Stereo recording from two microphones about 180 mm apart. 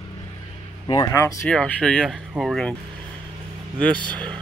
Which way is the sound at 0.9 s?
20° left (ahead or behind).